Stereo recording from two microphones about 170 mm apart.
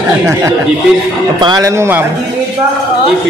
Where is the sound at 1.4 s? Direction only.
20° right (ahead or behind).